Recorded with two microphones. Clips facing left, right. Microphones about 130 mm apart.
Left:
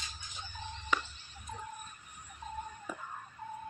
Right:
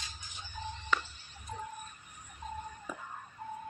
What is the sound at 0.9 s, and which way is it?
Music, 15° left (ahead or behind).